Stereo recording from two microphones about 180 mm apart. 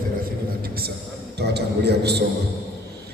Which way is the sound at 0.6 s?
60° right (ahead or behind).